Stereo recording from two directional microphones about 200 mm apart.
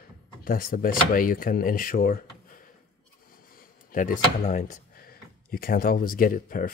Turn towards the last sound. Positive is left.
turn(degrees=45)  # may be behind; listen again after turning